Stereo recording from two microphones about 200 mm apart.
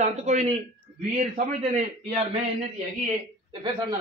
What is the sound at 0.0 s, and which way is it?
A man's voice, 35° right (ahead or behind).